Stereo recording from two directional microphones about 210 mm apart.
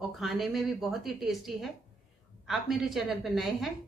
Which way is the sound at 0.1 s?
Centre (ahead or behind).